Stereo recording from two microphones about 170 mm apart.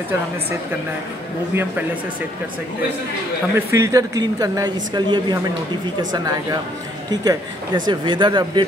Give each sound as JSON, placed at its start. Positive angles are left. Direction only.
{"t": 1.5, "sound": "a man's voice", "side_deg": -10}
{"t": 3.5, "sound": "speech", "side_deg": -20}